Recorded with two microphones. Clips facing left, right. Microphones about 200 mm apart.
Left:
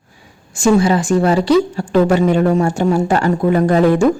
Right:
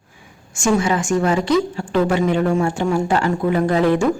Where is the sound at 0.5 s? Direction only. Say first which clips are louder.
Left 5 dB; 35° left (ahead or behind).